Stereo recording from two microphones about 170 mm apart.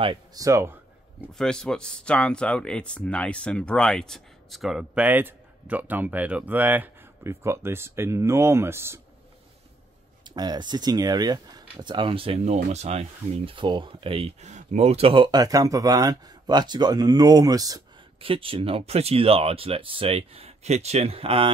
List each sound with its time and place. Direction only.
0.0 s speech: 25° right (ahead or behind)
1.4 s speech: 5° left (ahead or behind); by 9.0 s 15° right (ahead or behind)
10.2 s speech: 25° right (ahead or behind)
18.3 s speech: 30° right (ahead or behind)